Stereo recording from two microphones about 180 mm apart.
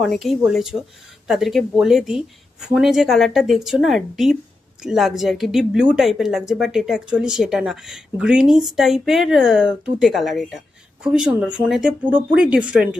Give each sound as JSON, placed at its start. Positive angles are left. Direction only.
{"t": 0.0, "sound": "a woman's voice", "side_deg": 0}